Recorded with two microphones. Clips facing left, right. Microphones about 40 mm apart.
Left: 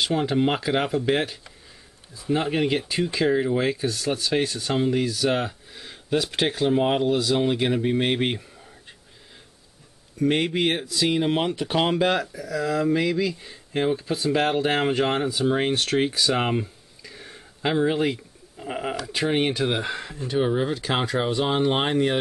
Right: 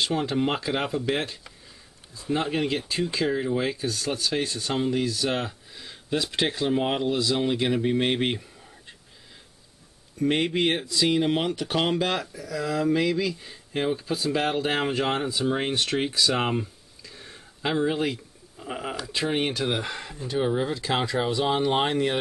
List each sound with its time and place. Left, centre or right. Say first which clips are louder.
0.0 s speech: left 3 dB; centre
4.6 s speech: left 3 dB; centre
10.1 s speech: left 2 dB; centre